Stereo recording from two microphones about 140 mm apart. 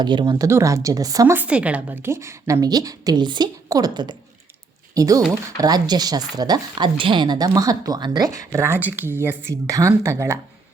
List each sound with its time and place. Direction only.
0.0 s speech: 30° right (ahead or behind)
1.4 s speech: 10° right (ahead or behind)